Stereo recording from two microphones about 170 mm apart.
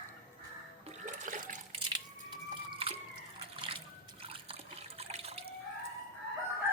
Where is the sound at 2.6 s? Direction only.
35° right (ahead or behind).